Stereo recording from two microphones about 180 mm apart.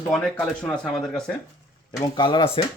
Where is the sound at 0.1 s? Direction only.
5° left (ahead or behind).